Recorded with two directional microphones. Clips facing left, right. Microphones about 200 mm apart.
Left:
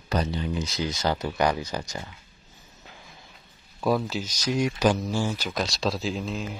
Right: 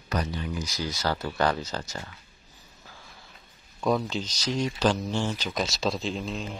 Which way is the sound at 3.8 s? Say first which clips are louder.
Left 1 dB; 5° left (ahead or behind).